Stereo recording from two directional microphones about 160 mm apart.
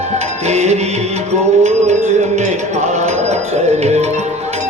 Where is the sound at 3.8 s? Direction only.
45° right (ahead or behind).